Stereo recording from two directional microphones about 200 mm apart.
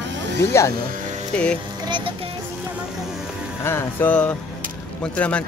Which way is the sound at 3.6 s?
10° left (ahead or behind).